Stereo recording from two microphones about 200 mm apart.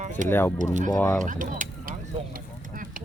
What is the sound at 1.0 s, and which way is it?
Speech, 10° left (ahead or behind).